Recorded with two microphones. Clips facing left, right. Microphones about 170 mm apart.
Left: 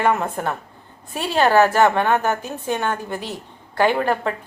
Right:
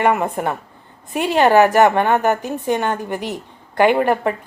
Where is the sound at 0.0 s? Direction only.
15° right (ahead or behind).